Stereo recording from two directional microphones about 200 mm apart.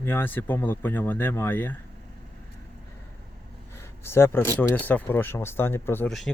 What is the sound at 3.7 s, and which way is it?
Speech, 10° left (ahead or behind).